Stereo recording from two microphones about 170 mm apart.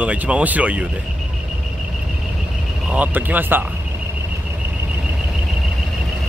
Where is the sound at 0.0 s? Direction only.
10° right (ahead or behind).